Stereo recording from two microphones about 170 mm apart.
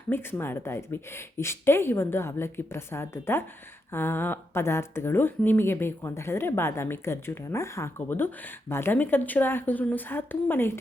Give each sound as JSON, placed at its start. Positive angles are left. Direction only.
{"t": 0.1, "sound": "a woman's voice", "side_deg": 15}